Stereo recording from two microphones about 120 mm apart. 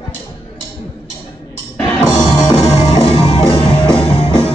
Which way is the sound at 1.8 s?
20° left (ahead or behind).